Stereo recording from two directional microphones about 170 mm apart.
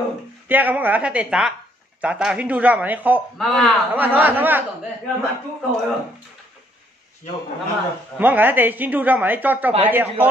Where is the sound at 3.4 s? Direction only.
Centre (ahead or behind).